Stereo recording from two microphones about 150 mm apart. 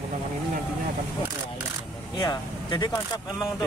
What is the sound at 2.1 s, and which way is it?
Vehicle, 25° left (ahead or behind).